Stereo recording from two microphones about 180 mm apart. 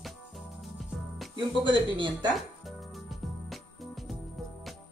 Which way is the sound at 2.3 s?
Centre (ahead or behind).